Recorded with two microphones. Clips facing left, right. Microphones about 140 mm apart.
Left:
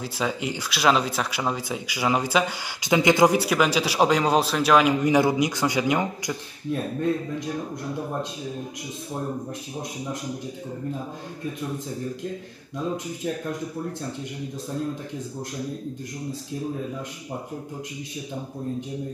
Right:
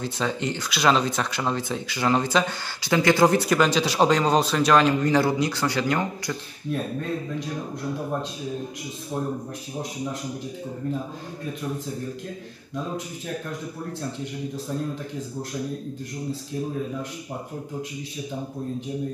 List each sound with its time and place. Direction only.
0.0 s speech: 5° left (ahead or behind)